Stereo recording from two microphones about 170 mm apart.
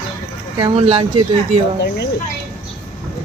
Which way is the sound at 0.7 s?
40° right (ahead or behind).